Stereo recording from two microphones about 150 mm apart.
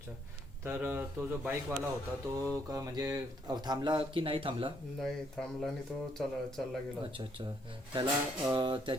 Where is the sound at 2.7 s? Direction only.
25° right (ahead or behind).